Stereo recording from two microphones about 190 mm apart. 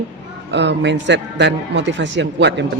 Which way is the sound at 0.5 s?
65° right (ahead or behind).